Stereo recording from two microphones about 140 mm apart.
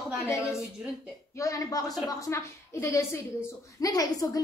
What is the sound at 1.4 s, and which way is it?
A woman's voice, 25° left (ahead or behind).